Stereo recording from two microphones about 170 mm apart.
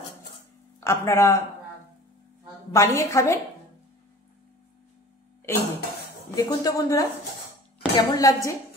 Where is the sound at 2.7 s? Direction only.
15° left (ahead or behind).